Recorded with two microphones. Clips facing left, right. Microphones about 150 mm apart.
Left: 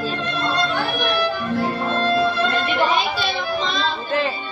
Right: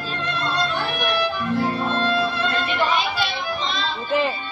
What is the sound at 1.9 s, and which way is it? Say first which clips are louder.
Music: left 2 dB; 45° left (ahead or behind).